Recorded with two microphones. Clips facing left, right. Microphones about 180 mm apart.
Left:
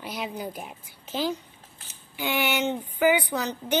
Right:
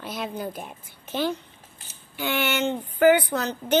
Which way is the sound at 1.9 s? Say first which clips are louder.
Right 1 dB; 10° left (ahead or behind).